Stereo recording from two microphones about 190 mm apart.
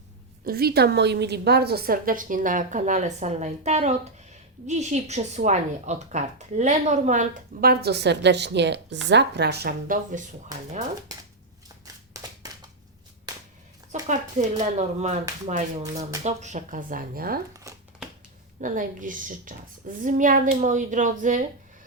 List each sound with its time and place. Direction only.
0.4 s a woman's voice: 55° right (ahead or behind)
7.6 s a woman's voice: 60° right (ahead or behind)
12.1 s a sound: 20° right (ahead or behind)
14.1 s a woman's voice: 40° right (ahead or behind)
17.5 s crumpling: 15° right (ahead or behind)
18.6 s a woman's voice: 45° right (ahead or behind)